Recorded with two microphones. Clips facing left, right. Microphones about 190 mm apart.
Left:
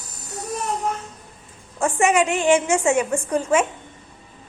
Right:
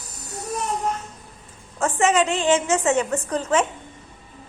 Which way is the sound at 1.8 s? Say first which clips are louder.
Left 1 dB; 15° left (ahead or behind).